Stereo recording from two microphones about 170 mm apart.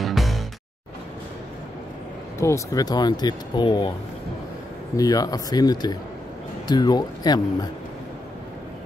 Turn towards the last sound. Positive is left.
turn(degrees=25)  # may be behind; listen again after turning